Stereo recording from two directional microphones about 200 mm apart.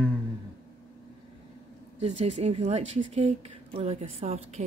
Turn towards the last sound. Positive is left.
turn(degrees=-35)  # may be behind; listen again after turning